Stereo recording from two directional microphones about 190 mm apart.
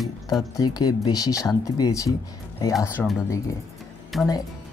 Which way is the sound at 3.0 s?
5° left (ahead or behind).